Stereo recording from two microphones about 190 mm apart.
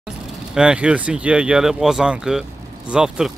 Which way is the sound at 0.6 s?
5° right (ahead or behind).